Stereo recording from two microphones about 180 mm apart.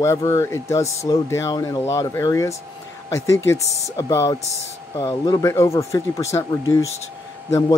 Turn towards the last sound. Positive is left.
turn(degrees=20)  # may be behind; listen again after turning